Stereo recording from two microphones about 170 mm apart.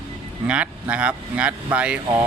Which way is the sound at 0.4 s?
5° right (ahead or behind).